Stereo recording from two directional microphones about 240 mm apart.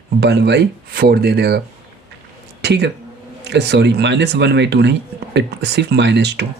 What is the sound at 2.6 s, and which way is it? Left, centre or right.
Speech, right.